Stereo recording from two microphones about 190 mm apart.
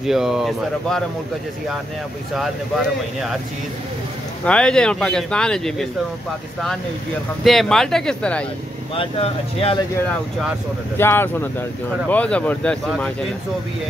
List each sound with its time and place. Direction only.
0.0 s speech: centre (ahead or behind)
4.5 s speech: 5° left (ahead or behind)
7.4 s speech: centre (ahead or behind)
8.9 s speech: 30° left (ahead or behind)
11.0 s speech: 10° left (ahead or behind)